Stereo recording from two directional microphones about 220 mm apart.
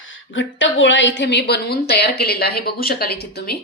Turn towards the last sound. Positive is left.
turn(degrees=45)  # may be behind; listen again after turning